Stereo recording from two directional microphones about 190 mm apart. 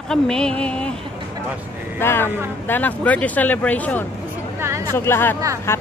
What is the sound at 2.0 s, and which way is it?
Speech, 10° left (ahead or behind).